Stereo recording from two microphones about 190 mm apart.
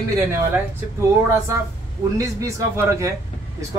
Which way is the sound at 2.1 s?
15° right (ahead or behind).